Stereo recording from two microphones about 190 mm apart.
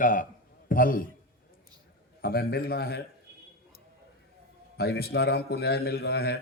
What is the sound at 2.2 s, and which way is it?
Speech, 55° left (ahead or behind).